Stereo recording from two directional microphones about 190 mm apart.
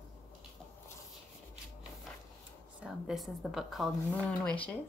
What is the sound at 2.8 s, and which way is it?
A woman's voice, centre (ahead or behind).